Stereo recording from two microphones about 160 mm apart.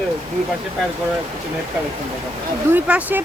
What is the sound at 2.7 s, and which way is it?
Speech, 10° right (ahead or behind).